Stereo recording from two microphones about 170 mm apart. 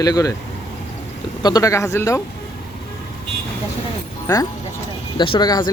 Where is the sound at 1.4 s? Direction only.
25° left (ahead or behind).